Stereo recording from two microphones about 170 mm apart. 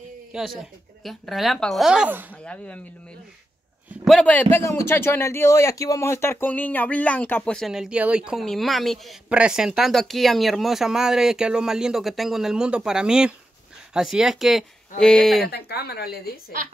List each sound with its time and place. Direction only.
0.3 s a man's voice: centre (ahead or behind)
2.3 s speech: 10° left (ahead or behind)
4.0 s a man's voice: 5° left (ahead or behind)
15.5 s speech: 70° left (ahead or behind)